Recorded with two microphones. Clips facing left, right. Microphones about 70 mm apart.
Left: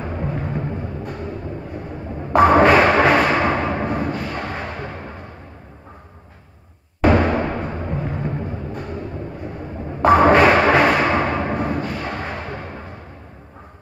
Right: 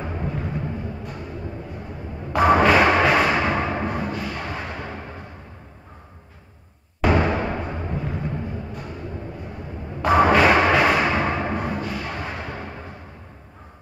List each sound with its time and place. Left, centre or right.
0.2 s a sound: left
2.3 s music: left
7.0 s music: left
10.0 s music: left